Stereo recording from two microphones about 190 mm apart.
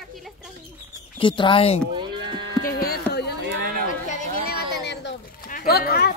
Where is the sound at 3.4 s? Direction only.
55° right (ahead or behind).